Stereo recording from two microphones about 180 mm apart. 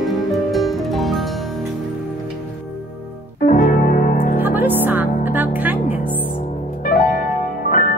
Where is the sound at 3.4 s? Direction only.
50° left (ahead or behind).